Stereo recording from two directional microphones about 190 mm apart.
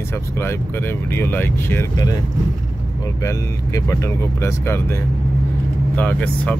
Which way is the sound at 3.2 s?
15° left (ahead or behind).